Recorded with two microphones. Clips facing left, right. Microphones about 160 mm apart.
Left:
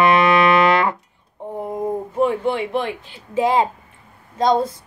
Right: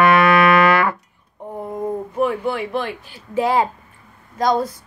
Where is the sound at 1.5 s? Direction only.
20° left (ahead or behind).